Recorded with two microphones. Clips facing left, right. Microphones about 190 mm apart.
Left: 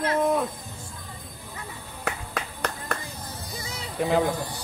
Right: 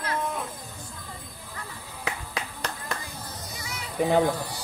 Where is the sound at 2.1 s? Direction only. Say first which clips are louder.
Left 2 dB; 50° left (ahead or behind).